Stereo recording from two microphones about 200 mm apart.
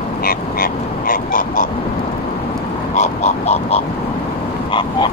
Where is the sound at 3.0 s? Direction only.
35° left (ahead or behind).